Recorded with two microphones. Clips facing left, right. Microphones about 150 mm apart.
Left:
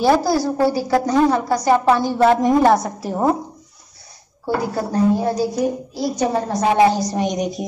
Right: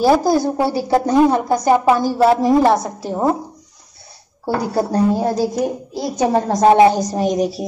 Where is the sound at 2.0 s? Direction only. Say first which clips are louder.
Right 1 dB; 5° right (ahead or behind).